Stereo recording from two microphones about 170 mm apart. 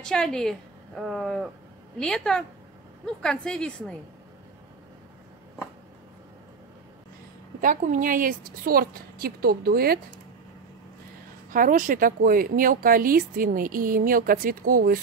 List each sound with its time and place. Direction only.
0.0 s a woman's voice: 5° left (ahead or behind)
7.6 s speech: 50° right (ahead or behind)
11.5 s speech: 50° right (ahead or behind)